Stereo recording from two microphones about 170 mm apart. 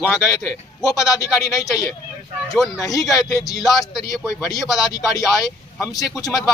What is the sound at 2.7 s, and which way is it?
Speech, 20° left (ahead or behind).